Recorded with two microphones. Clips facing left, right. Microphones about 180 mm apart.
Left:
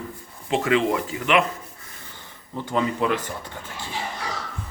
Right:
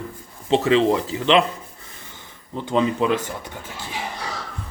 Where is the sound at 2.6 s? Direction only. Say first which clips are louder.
Right 3 dB; 20° right (ahead or behind).